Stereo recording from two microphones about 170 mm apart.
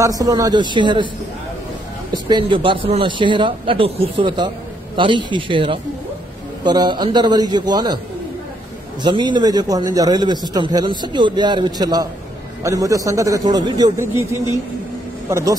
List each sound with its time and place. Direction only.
0.0 s a man's voice: 20° right (ahead or behind)
2.1 s a man's voice: 25° right (ahead or behind)
9.0 s a man's voice: 25° right (ahead or behind)
15.2 s speech: 15° right (ahead or behind)